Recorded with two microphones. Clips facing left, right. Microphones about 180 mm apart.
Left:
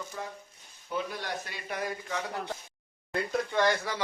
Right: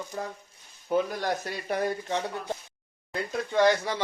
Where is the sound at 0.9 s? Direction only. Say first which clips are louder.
Right 8 dB; 45° right (ahead or behind).